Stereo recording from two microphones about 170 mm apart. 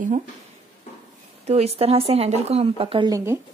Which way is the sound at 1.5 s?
35° right (ahead or behind).